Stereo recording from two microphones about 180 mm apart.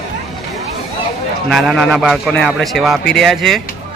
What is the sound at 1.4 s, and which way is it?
A man's voice, centre (ahead or behind).